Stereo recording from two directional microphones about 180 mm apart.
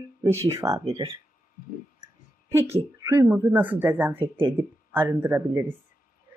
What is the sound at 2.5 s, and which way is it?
Speech, 15° right (ahead or behind).